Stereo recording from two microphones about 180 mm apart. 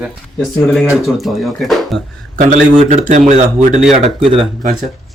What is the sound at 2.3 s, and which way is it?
Speech, 45° right (ahead or behind).